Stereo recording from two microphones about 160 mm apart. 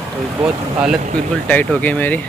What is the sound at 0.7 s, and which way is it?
Speech, 5° right (ahead or behind).